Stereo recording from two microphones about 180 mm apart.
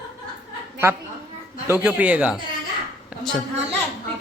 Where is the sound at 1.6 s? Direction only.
10° right (ahead or behind).